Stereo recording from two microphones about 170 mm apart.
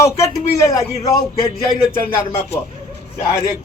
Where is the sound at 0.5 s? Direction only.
20° left (ahead or behind).